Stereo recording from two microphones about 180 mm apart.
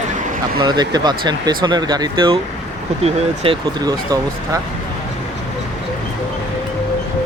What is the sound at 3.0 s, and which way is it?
Speech, 35° right (ahead or behind).